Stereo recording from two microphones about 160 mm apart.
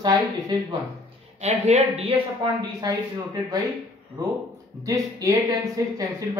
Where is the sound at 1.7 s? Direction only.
40° right (ahead or behind); by 3.6 s 25° right (ahead or behind).